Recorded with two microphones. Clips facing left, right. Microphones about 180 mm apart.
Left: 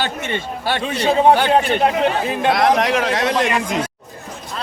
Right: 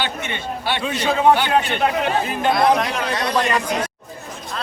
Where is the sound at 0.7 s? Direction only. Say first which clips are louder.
Left 3 dB; 40° left (ahead or behind).